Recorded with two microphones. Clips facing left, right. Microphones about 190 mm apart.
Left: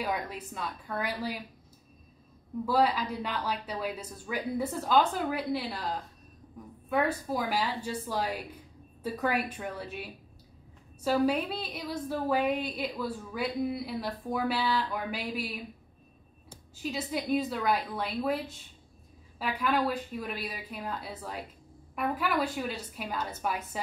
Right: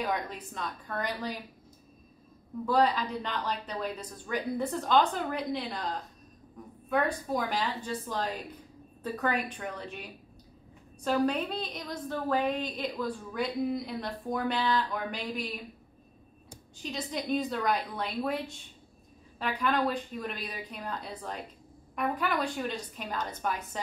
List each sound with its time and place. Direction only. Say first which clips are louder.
0.0 s a woman's voice: right 1 dB; 10° left (ahead or behind)
2.6 s a woman's voice: even; 5° left (ahead or behind)
11.1 s a woman's voice: left 1 dB; 5° left (ahead or behind)
16.8 s a woman's voice: left 2 dB; 5° left (ahead or behind)